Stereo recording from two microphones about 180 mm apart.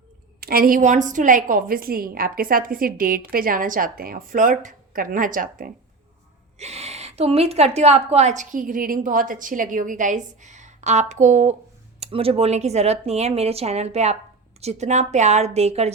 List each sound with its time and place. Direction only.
0.3 s a woman's voice: 55° right (ahead or behind)
6.6 s a woman's voice: 35° right (ahead or behind)